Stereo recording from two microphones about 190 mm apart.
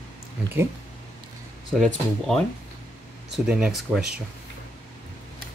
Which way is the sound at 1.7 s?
Centre (ahead or behind).